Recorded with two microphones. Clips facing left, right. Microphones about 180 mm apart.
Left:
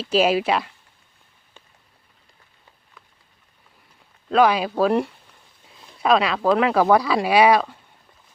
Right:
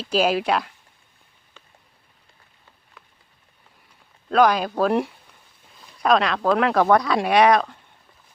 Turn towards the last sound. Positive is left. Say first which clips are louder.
# left 1 dB
turn(degrees=5)  # may be behind; listen again after turning